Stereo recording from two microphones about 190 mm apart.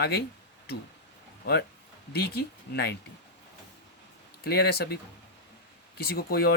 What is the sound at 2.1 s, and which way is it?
Speech, 55° left (ahead or behind).